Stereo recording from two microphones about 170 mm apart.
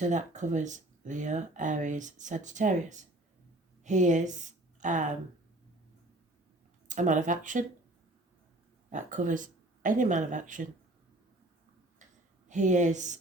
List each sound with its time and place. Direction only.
0.0 s a woman's voice: 45° right (ahead or behind)
6.8 s speech: 45° right (ahead or behind)
8.9 s speech: 45° right (ahead or behind)
12.5 s speech: 45° right (ahead or behind)